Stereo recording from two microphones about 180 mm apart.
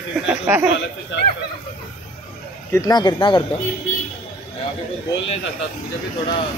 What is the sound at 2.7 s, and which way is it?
Speech, 20° left (ahead or behind).